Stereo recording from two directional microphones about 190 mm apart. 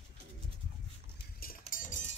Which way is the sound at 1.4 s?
50° left (ahead or behind).